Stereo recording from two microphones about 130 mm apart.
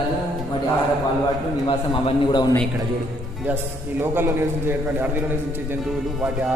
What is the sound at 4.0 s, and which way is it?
A man's voice, 15° right (ahead or behind).